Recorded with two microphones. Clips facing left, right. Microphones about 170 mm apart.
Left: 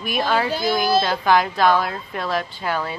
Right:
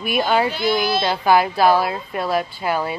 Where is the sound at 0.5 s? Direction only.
45° left (ahead or behind).